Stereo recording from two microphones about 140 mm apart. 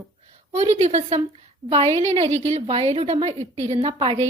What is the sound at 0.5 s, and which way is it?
A woman's voice, 50° right (ahead or behind).